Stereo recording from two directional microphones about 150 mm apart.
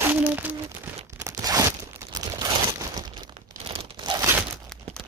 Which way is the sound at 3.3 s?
40° right (ahead or behind).